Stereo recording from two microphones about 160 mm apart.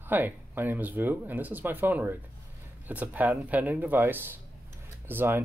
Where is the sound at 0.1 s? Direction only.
10° right (ahead or behind).